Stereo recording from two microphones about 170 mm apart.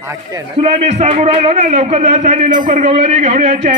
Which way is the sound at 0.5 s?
40° right (ahead or behind).